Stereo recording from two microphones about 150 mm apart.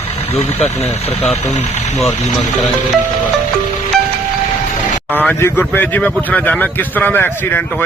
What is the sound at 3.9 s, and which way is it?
Music, centre (ahead or behind).